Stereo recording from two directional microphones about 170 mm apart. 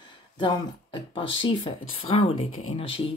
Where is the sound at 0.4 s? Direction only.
30° left (ahead or behind).